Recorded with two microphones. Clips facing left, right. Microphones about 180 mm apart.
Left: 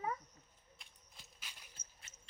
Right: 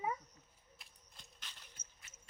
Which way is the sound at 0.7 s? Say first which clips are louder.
Right 1 dB; centre (ahead or behind).